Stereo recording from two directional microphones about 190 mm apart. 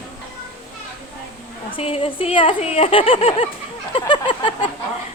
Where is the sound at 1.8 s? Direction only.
30° left (ahead or behind).